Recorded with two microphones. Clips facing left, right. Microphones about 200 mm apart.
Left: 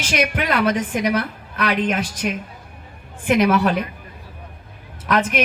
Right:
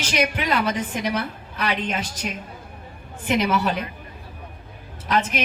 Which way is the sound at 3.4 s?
55° left (ahead or behind).